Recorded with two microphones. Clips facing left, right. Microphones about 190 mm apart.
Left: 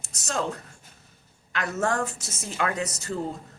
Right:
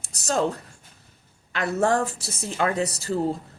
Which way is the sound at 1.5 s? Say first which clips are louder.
Right 4 dB; 30° right (ahead or behind).